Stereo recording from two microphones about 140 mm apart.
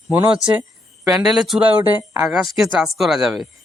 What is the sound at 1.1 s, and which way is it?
A man's voice, 5° right (ahead or behind).